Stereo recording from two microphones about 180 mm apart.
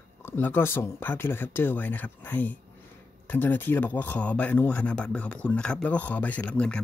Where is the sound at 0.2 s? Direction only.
10° left (ahead or behind).